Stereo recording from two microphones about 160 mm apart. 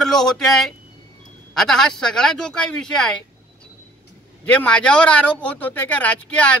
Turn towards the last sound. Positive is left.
turn(degrees=10)  # may be behind; listen again after turning